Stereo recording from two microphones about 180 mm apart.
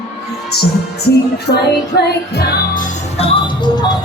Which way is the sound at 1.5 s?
65° left (ahead or behind).